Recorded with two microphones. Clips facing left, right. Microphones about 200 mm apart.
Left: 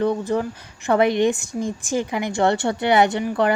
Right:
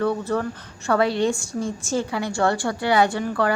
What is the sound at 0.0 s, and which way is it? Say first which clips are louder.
A woman's voice: left 2 dB; 15° left (ahead or behind).